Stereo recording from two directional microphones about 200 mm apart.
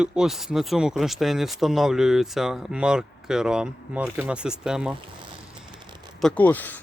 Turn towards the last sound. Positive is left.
turn(degrees=10)  # may be behind; listen again after turning